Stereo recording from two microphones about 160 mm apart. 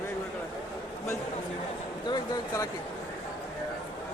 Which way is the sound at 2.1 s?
20° left (ahead or behind).